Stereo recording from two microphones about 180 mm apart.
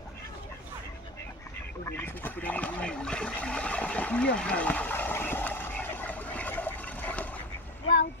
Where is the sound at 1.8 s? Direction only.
10° left (ahead or behind).